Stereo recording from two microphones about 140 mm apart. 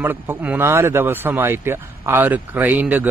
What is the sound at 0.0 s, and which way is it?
Speech, 15° right (ahead or behind).